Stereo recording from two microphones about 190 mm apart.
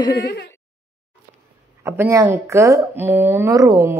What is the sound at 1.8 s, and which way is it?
Speech, 15° right (ahead or behind).